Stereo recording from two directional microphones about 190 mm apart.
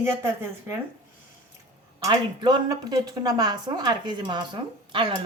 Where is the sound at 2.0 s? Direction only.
20° right (ahead or behind).